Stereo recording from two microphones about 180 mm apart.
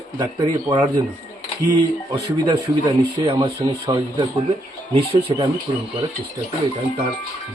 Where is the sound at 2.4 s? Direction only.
25° right (ahead or behind).